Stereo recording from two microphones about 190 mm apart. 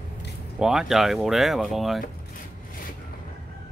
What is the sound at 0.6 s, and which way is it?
Speech, centre (ahead or behind).